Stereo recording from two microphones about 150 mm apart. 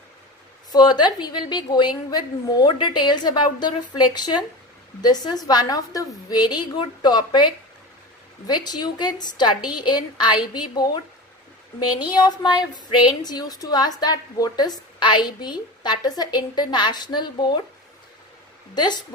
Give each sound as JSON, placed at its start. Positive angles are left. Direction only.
{"t": 0.7, "sound": "a woman's voice", "side_deg": 30}
{"t": 18.8, "sound": "a woman's voice", "side_deg": 30}